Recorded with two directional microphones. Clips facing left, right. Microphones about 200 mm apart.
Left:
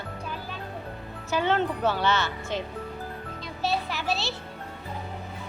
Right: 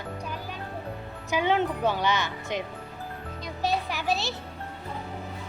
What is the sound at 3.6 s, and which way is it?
Music, 15° right (ahead or behind).